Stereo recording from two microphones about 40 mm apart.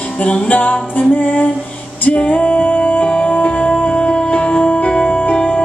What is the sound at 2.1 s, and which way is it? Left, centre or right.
Music, left.